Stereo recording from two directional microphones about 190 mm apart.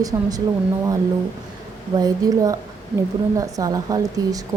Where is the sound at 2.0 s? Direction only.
20° right (ahead or behind).